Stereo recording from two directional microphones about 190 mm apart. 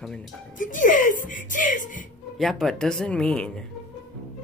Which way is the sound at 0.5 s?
45° left (ahead or behind).